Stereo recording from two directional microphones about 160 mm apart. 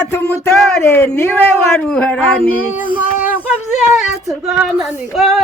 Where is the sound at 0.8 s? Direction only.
15° left (ahead or behind).